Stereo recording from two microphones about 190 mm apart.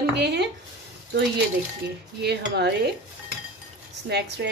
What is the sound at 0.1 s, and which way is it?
Speech, 65° right (ahead or behind).